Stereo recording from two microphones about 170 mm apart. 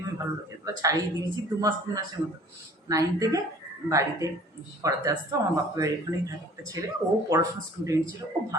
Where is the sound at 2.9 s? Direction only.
20° right (ahead or behind).